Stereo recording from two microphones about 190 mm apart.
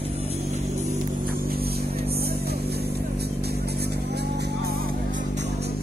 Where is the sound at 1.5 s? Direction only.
55° right (ahead or behind).